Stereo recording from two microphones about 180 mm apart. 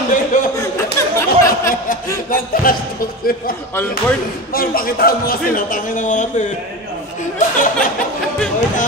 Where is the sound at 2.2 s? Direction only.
50° left (ahead or behind).